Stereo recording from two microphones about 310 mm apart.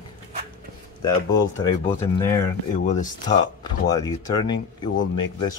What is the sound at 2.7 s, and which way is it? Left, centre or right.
Speech, left.